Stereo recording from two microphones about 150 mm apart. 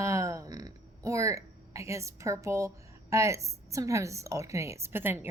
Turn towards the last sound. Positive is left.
turn(degrees=-15)  # may be behind; listen again after turning